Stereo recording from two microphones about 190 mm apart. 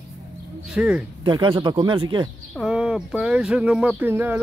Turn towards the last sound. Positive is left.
turn(degrees=-10)  # may be behind; listen again after turning